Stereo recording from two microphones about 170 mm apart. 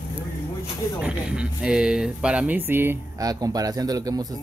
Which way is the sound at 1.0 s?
5° right (ahead or behind).